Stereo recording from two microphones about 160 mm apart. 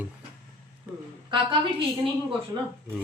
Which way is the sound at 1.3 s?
30° right (ahead or behind).